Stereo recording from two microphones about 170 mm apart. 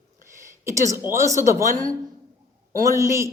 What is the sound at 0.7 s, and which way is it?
A woman's voice, 15° right (ahead or behind).